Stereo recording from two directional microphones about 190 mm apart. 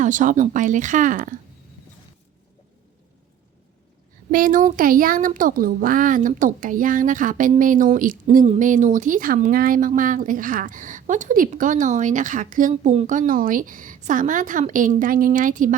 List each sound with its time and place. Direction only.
0.0 s speech: 40° right (ahead or behind)
4.3 s speech: 45° right (ahead or behind)